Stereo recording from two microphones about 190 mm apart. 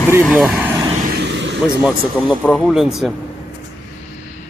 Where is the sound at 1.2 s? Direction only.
65° right (ahead or behind).